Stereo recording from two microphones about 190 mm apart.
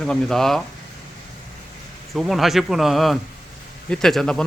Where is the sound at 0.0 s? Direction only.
Centre (ahead or behind).